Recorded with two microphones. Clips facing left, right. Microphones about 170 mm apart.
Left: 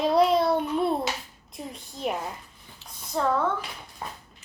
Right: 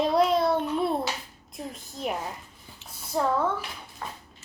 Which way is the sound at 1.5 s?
Centre (ahead or behind).